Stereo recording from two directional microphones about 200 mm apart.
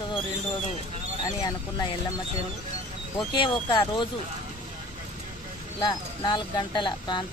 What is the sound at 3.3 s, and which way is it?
Speech, 20° left (ahead or behind).